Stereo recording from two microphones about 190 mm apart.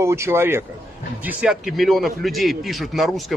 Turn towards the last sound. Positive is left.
turn(degrees=0)  # may be behind; listen again after turning